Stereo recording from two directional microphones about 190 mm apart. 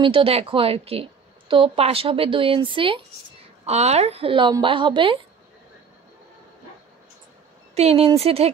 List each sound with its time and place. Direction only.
0.0 s a woman's voice: 30° right (ahead or behind)
7.7 s speech: 35° right (ahead or behind)